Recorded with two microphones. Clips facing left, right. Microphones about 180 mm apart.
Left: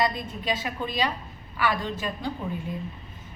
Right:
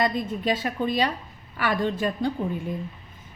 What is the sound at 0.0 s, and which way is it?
A woman's voice, 50° right (ahead or behind).